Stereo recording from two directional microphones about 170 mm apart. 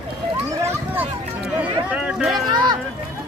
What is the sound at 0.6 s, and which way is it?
Run, 15° right (ahead or behind).